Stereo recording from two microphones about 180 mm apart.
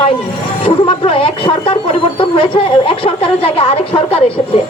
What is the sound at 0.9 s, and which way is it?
Speech, 30° left (ahead or behind).